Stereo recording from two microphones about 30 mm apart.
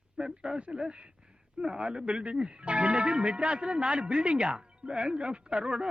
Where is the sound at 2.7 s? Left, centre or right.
Right.